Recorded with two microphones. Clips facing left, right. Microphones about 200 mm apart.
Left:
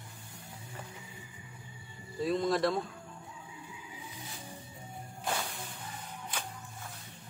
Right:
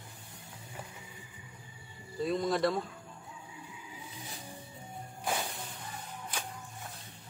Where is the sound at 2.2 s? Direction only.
Centre (ahead or behind).